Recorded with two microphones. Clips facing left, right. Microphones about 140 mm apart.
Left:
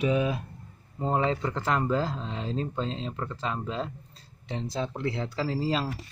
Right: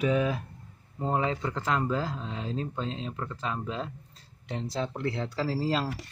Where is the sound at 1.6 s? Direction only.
5° left (ahead or behind).